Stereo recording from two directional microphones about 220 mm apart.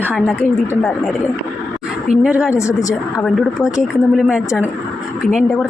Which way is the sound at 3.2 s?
Centre (ahead or behind).